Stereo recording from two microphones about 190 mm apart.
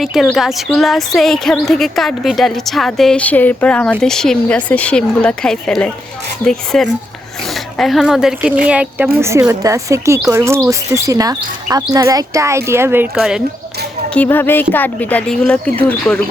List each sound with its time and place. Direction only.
0.0 s speech: centre (ahead or behind)
14.1 s speech: 10° left (ahead or behind)